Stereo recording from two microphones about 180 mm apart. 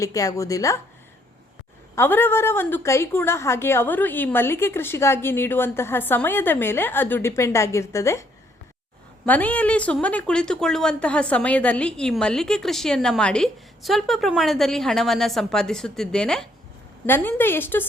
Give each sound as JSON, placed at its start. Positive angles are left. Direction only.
{"t": 0.0, "sound": "a woman's voice", "side_deg": 20}
{"t": 2.0, "sound": "a woman's voice", "side_deg": 10}